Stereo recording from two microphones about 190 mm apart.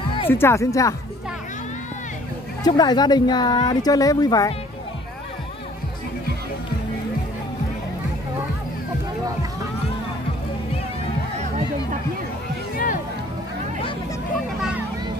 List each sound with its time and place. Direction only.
0.3 s speech: 15° left (ahead or behind)
2.6 s speech: 20° left (ahead or behind)
12.7 s music: 45° left (ahead or behind)